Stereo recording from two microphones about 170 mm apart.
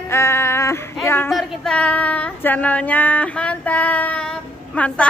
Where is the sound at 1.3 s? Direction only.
Centre (ahead or behind).